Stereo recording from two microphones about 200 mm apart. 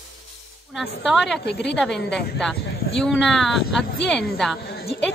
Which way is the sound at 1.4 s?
55° left (ahead or behind).